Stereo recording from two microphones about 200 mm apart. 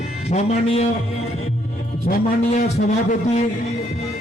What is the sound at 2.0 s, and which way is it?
A man's voice, 40° left (ahead or behind).